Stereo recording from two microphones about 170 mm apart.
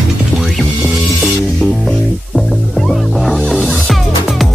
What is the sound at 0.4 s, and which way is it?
Music, centre (ahead or behind).